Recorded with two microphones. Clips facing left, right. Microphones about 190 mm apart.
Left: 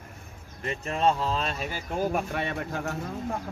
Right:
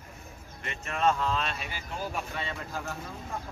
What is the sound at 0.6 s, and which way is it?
Speech, 35° left (ahead or behind).